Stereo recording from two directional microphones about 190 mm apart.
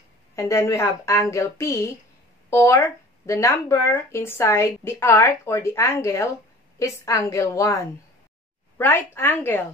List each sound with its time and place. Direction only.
0.4 s speech: 15° left (ahead or behind)